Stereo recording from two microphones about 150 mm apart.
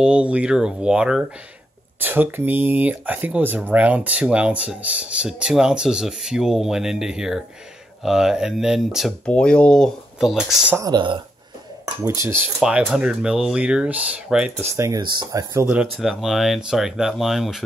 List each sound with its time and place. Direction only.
0.0 s speech: 5° right (ahead or behind)
10.8 s speech: 30° right (ahead or behind)
12.5 s speech: 5° right (ahead or behind)
14.8 s speech: 25° right (ahead or behind)
15.5 s speech: 10° right (ahead or behind)